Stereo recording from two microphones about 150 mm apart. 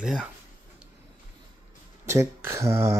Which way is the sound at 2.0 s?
20° right (ahead or behind).